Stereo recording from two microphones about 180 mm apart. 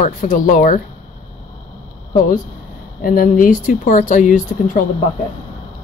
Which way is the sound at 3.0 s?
50° left (ahead or behind).